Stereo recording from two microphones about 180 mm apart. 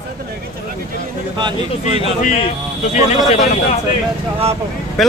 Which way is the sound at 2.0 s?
40° left (ahead or behind).